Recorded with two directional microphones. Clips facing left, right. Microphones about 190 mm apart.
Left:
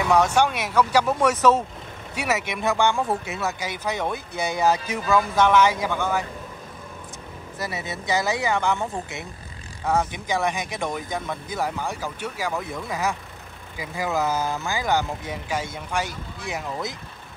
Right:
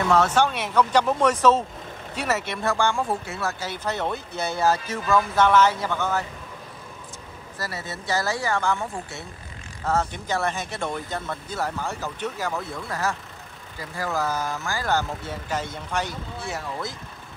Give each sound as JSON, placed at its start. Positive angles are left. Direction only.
{"t": 0.0, "sound": "speech", "side_deg": 10}
{"t": 7.5, "sound": "speech", "side_deg": 20}